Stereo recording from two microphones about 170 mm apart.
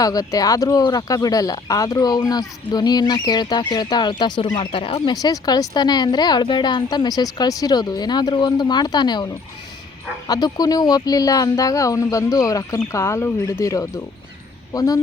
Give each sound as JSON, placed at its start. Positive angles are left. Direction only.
{"t": 0.0, "sound": "speech", "side_deg": 20}